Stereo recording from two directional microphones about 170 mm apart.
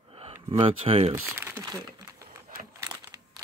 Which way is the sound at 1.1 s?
15° right (ahead or behind).